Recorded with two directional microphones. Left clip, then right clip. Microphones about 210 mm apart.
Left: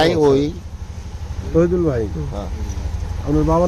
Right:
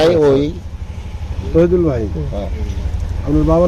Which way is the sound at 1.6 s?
Centre (ahead or behind).